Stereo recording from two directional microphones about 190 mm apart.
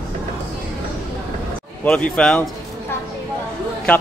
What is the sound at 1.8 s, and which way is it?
Speech, 5° left (ahead or behind).